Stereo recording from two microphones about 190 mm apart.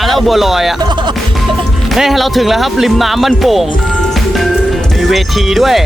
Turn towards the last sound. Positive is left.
turn(degrees=0)  # may be behind; listen again after turning